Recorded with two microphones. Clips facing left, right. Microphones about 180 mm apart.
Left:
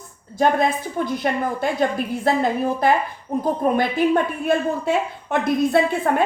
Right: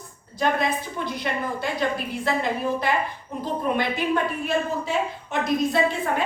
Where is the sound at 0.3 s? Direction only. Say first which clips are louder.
Left 5 dB; 45° left (ahead or behind).